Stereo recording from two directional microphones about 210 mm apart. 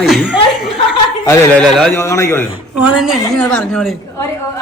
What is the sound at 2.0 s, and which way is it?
Speech, 15° left (ahead or behind).